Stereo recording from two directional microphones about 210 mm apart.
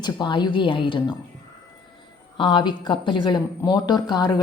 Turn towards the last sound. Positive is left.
turn(degrees=20)  # may be behind; listen again after turning